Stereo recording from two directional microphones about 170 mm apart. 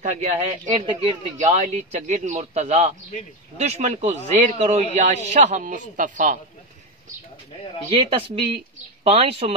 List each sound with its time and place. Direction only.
0.0 s a man's voice: 45° right (ahead or behind)
7.9 s speech: 30° right (ahead or behind)